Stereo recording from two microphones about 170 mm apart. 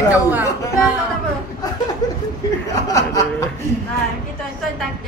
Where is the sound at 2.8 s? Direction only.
20° left (ahead or behind).